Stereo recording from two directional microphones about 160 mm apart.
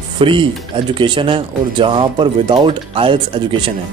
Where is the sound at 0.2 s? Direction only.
30° right (ahead or behind).